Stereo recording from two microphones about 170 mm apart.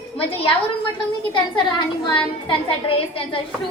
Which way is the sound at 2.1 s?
30° left (ahead or behind).